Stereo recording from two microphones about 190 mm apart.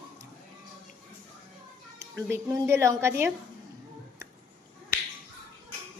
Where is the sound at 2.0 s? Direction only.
15° right (ahead or behind).